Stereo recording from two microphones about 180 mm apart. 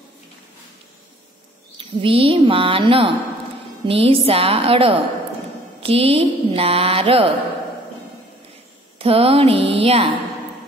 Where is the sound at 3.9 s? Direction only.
30° right (ahead or behind).